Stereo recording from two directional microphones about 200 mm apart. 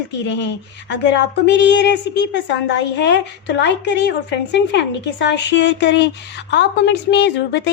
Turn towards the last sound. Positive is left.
turn(degrees=55)  # may be behind; listen again after turning